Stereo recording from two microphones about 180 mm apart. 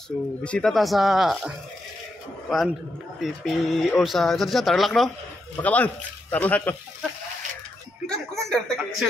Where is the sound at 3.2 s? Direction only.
Centre (ahead or behind).